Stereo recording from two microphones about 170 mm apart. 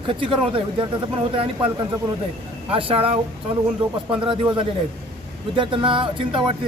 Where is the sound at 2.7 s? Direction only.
35° right (ahead or behind).